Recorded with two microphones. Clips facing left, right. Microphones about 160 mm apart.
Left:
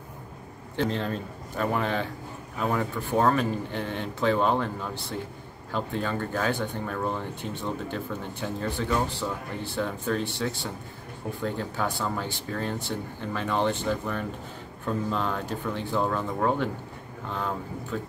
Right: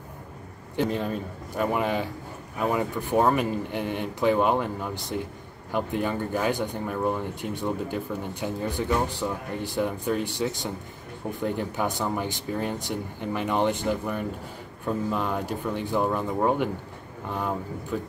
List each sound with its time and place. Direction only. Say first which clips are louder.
0.7 s speech: right 2 dB; 10° right (ahead or behind)